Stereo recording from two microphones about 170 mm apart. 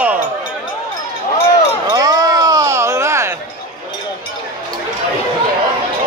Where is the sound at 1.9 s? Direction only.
20° right (ahead or behind).